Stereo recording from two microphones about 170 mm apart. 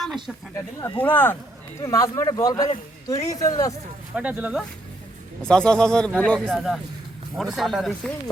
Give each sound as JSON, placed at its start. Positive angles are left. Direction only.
{"t": 0.5, "sound": "a man's voice", "side_deg": 15}
{"t": 4.1, "sound": "speech", "side_deg": -5}
{"t": 5.4, "sound": "a man's voice", "side_deg": 5}